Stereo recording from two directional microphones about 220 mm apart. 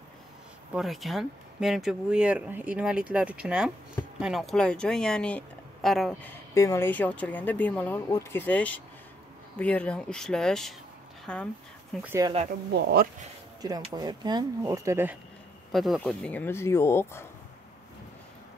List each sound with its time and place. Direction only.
0.7 s speech: centre (ahead or behind)
6.5 s speech: 15° left (ahead or behind)
11.9 s speech: 10° right (ahead or behind)
12.7 s speech: 45° right (ahead or behind)
13.6 s speech: 15° right (ahead or behind)
15.7 s speech: centre (ahead or behind)